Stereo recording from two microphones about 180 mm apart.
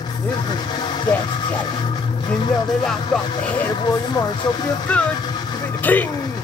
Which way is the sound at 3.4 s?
10° left (ahead or behind).